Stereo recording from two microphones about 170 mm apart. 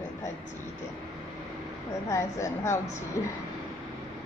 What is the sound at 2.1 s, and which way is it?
A woman's voice, 15° left (ahead or behind).